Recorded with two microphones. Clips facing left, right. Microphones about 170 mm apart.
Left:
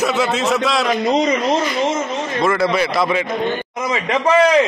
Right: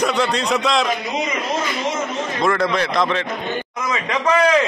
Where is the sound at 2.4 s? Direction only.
5° left (ahead or behind).